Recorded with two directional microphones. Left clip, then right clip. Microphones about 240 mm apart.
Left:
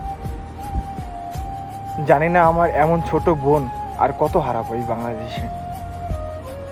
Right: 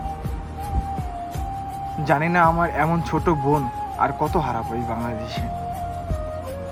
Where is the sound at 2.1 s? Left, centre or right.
Right.